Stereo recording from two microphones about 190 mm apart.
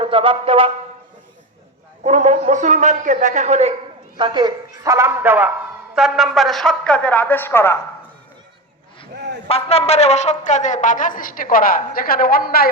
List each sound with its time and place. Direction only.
0.0 s music: 25° right (ahead or behind)
2.0 s a man's voice: 40° right (ahead or behind)
4.2 s a man's voice: 25° right (ahead or behind); by 7.8 s 15° left (ahead or behind)
9.5 s a woman's voice: 30° left (ahead or behind); by 12.6 s 50° left (ahead or behind)